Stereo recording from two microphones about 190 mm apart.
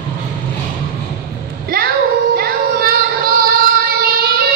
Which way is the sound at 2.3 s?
55° right (ahead or behind).